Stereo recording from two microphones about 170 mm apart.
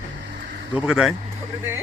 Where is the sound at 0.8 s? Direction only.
5° right (ahead or behind).